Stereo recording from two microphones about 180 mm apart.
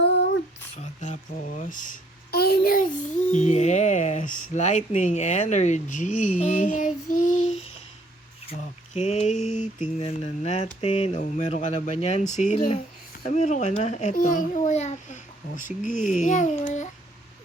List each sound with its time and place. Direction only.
0.0 s a sound: 75° left (ahead or behind)
0.8 s a child's voice: 40° left (ahead or behind)
4.9 s mantra: 40° left (ahead or behind)
13.3 s a child's voice: 40° left (ahead or behind)